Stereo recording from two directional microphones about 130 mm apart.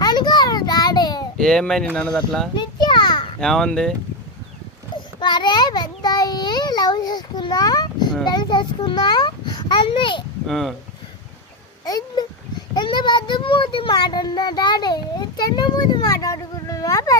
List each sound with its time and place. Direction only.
0.0 s a sound: 35° left (ahead or behind)
1.4 s speech: 5° left (ahead or behind)
2.6 s a sound: 35° left (ahead or behind)
3.4 s speech: 5° left (ahead or behind)
5.2 s child singing: 35° left (ahead or behind)
8.2 s a child's voice: 35° left (ahead or behind)
10.4 s speech: centre (ahead or behind)
11.9 s a child's voice: 30° left (ahead or behind)